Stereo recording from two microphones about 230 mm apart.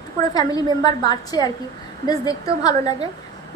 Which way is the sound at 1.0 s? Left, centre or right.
Centre.